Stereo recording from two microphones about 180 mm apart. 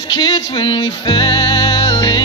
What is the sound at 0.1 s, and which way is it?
Music, 25° left (ahead or behind).